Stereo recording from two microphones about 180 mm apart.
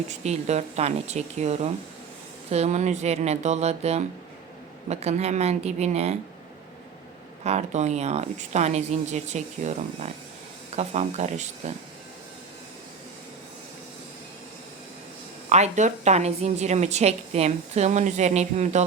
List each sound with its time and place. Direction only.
0.1 s a woman's voice: 40° right (ahead or behind)
7.4 s a woman's voice: 40° right (ahead or behind)
15.4 s a woman's voice: 40° right (ahead or behind)